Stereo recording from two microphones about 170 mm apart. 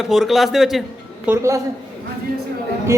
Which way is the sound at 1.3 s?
15° right (ahead or behind).